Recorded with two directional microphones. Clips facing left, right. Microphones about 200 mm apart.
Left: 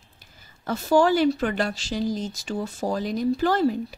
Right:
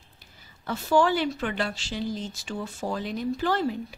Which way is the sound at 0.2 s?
45° left (ahead or behind).